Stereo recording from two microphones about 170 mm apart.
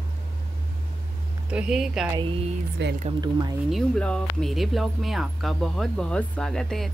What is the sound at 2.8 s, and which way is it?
Speech, 90° right.